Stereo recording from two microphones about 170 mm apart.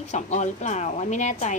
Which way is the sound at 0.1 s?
45° left (ahead or behind).